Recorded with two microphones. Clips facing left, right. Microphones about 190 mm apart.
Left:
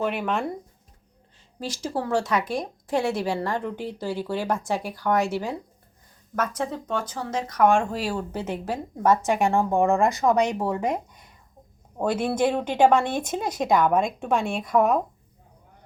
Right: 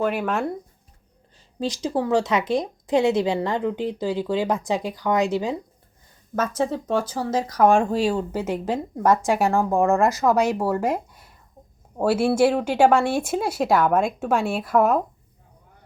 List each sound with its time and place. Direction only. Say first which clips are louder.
0.0 s a woman's voice: right 3 dB; centre (ahead or behind)
1.5 s a woman's voice: right 5 dB; 20° right (ahead or behind); by 8.0 s 35° right (ahead or behind)
8.3 s a woman's voice: right 4 dB; 10° right (ahead or behind)